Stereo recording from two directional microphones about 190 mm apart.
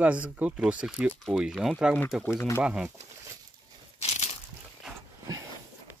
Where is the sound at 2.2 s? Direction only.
15° left (ahead or behind).